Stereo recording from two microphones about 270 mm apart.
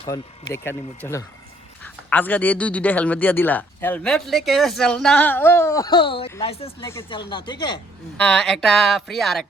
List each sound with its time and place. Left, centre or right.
0.0 s a man's voice: centre
8.2 s speech: centre